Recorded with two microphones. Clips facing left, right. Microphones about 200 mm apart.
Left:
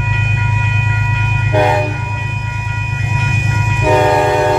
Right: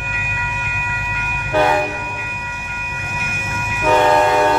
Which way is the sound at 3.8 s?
15° left (ahead or behind).